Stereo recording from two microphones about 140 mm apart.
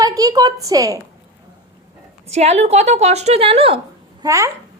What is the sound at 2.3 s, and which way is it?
A woman's voice, 50° right (ahead or behind).